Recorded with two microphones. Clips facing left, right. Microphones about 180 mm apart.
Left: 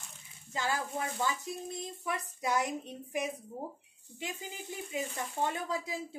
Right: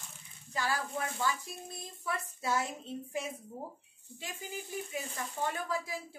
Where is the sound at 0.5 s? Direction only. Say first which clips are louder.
Left 1 dB; 20° left (ahead or behind).